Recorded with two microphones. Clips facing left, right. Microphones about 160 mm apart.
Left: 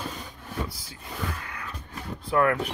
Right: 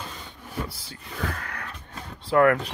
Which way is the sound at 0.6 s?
30° right (ahead or behind).